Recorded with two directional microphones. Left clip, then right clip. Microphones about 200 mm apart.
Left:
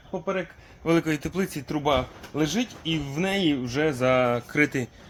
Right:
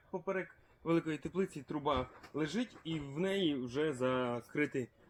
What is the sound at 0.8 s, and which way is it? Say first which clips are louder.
Speech: left 11 dB; 30° left (ahead or behind).